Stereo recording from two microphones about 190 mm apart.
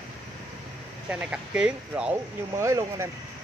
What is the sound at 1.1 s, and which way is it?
Speech, 5° right (ahead or behind).